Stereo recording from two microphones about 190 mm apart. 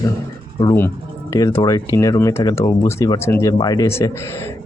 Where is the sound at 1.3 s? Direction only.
15° left (ahead or behind).